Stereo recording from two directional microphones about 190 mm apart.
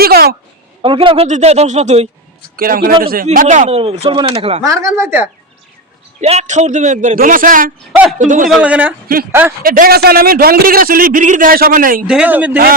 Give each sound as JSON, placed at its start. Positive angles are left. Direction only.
{"t": 0.0, "sound": "a sound", "side_deg": -55}
{"t": 0.8, "sound": "a man's voice", "side_deg": -25}
{"t": 2.6, "sound": "a man's voice", "side_deg": -50}
{"t": 4.6, "sound": "a woman's voice", "side_deg": -15}
{"t": 6.1, "sound": "a man's voice", "side_deg": -35}
{"t": 8.4, "sound": "a woman's voice", "side_deg": -5}
{"t": 9.6, "sound": "a man's voice", "side_deg": -50}
{"t": 12.0, "sound": "a woman's voice", "side_deg": -5}